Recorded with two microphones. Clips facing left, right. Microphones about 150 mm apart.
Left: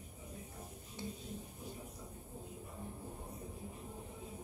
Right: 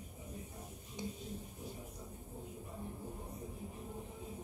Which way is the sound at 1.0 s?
15° right (ahead or behind).